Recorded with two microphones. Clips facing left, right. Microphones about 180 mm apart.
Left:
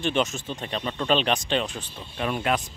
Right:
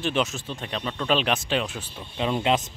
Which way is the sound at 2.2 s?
20° right (ahead or behind).